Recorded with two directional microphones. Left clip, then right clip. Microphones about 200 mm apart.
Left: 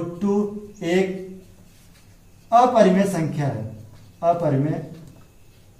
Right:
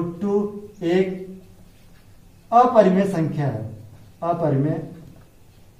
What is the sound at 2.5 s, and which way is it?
Speech, centre (ahead or behind).